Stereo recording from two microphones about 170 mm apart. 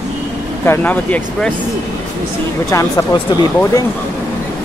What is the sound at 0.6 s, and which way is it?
Speech, 10° left (ahead or behind).